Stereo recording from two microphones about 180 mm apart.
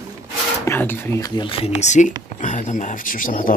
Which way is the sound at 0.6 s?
15° left (ahead or behind).